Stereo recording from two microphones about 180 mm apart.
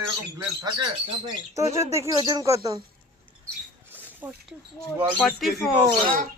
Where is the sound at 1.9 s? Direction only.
15° right (ahead or behind).